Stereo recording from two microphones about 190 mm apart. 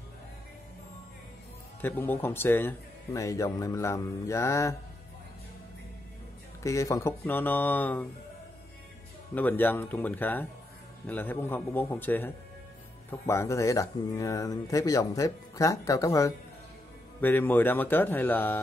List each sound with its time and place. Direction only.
1.8 s speech: 10° left (ahead or behind)
6.6 s speech: 15° left (ahead or behind)
9.3 s speech: 10° left (ahead or behind)
13.3 s speech: 15° left (ahead or behind)